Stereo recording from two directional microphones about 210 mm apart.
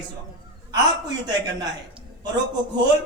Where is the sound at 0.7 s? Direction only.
20° right (ahead or behind).